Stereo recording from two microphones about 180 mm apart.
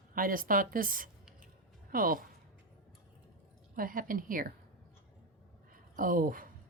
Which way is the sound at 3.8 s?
50° right (ahead or behind).